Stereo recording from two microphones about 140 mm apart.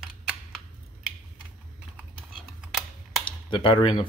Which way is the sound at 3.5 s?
35° left (ahead or behind).